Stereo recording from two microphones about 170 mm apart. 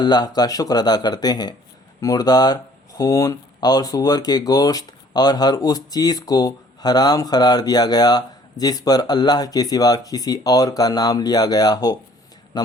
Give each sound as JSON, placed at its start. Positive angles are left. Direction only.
{"t": 0.0, "sound": "speech", "side_deg": 25}